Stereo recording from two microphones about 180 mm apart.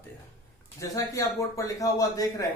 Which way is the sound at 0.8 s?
20° left (ahead or behind).